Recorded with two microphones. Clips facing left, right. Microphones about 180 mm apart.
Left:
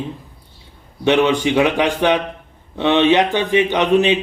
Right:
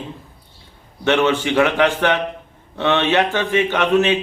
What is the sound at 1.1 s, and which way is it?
A man's voice, 15° left (ahead or behind).